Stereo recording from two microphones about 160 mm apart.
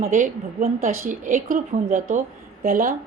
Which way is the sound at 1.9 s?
45° right (ahead or behind).